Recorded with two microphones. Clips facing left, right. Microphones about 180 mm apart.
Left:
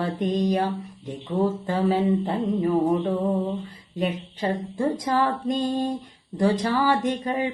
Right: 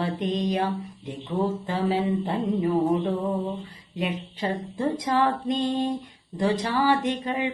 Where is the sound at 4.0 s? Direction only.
45° left (ahead or behind).